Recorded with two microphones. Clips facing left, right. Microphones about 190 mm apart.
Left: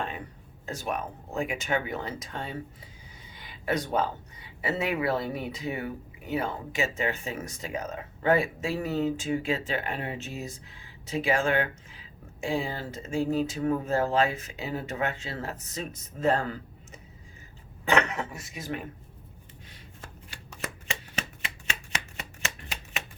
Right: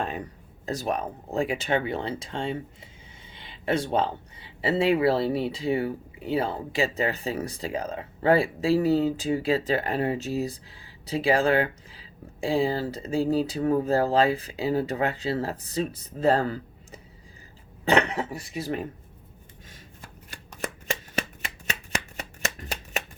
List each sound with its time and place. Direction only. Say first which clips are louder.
0.6 s speech: right 4 dB; 35° right (ahead or behind)
22.2 s shuffling cards: right 4 dB; 40° right (ahead or behind)